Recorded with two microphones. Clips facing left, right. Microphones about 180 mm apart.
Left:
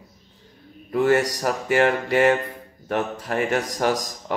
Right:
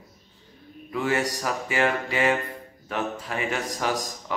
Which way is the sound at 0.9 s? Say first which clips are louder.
Left 6 dB; 55° left (ahead or behind).